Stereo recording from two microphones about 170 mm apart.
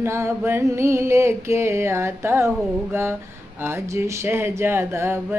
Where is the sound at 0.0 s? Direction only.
15° right (ahead or behind).